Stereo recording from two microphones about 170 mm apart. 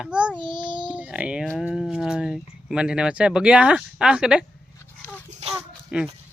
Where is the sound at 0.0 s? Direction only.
5° right (ahead or behind).